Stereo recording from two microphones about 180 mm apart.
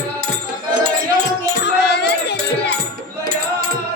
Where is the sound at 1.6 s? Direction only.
70° left (ahead or behind).